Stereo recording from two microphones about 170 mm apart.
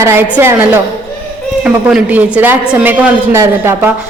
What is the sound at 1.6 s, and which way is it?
A woman's voice, 5° right (ahead or behind).